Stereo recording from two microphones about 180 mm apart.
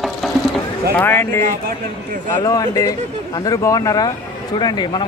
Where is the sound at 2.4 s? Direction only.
20° left (ahead or behind).